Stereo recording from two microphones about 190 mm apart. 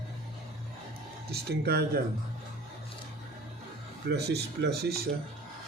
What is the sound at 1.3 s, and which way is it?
Speech, 55° right (ahead or behind).